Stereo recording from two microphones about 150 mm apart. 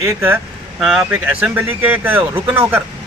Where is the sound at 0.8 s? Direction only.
5° right (ahead or behind).